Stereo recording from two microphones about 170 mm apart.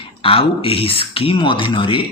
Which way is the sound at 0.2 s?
35° left (ahead or behind).